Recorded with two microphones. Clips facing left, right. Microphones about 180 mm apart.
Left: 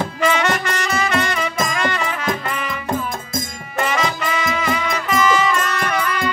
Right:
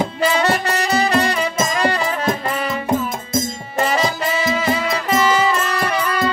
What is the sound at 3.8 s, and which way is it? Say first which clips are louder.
Music: right 2 dB; 35° right (ahead or behind).